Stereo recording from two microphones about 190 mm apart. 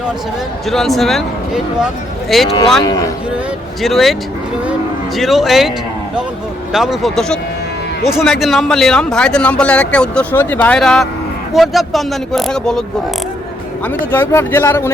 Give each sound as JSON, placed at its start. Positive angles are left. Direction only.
{"t": 0.7, "sound": "speech", "side_deg": 0}
{"t": 2.8, "sound": "speech", "side_deg": 20}
{"t": 3.8, "sound": "speech", "side_deg": 0}
{"t": 5.1, "sound": "speech", "side_deg": 0}
{"t": 6.7, "sound": "speech", "side_deg": 0}
{"t": 13.8, "sound": "speech", "side_deg": 10}